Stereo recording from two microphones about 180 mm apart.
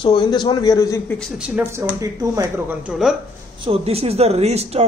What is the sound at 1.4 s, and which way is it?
Speech, 10° right (ahead or behind).